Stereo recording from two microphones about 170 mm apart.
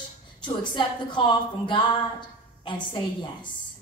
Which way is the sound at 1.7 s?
30° left (ahead or behind).